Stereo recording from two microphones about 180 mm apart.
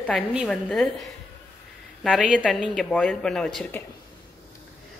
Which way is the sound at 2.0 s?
5° right (ahead or behind).